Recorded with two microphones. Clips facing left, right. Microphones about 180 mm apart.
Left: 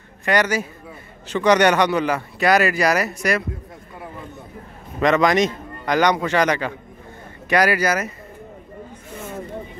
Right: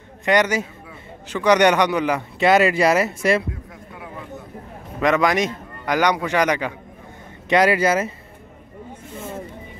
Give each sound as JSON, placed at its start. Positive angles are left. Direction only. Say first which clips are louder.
{"t": 0.2, "sound": "speech", "louder": "right 1 dB", "side_deg": -20}
{"t": 5.0, "sound": "a man's voice", "louder": "left 2 dB", "side_deg": -10}
{"t": 7.4, "sound": "speech", "louder": "right 2 dB", "side_deg": -25}